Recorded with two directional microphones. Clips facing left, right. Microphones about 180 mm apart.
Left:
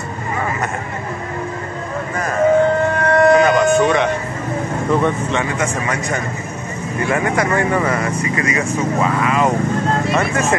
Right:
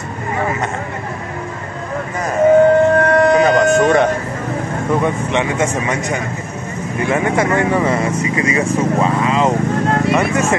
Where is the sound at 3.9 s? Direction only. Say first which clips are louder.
Right 3 dB; 45° right (ahead or behind).